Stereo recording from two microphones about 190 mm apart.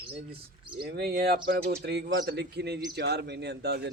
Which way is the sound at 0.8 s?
60° right (ahead or behind).